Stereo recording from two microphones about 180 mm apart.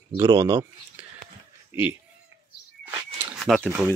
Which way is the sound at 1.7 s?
10° right (ahead or behind).